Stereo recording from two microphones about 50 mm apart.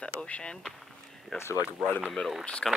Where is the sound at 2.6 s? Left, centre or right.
Centre.